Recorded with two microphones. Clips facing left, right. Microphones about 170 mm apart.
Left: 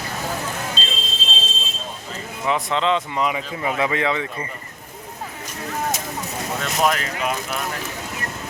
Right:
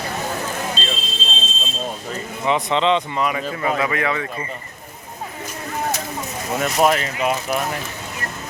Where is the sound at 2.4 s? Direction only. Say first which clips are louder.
Right 2 dB; centre (ahead or behind).